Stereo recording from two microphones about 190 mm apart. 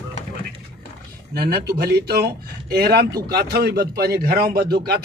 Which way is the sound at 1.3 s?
55° right (ahead or behind).